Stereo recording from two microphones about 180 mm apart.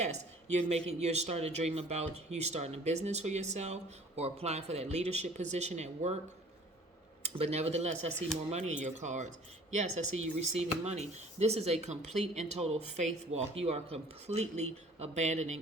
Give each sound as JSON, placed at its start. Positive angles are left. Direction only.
{"t": 0.0, "sound": "speech", "side_deg": -40}
{"t": 7.2, "sound": "speech", "side_deg": -35}
{"t": 10.6, "sound": "speech", "side_deg": -35}